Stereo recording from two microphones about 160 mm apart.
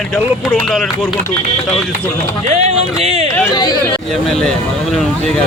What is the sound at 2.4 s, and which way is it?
Speech, 40° right (ahead or behind).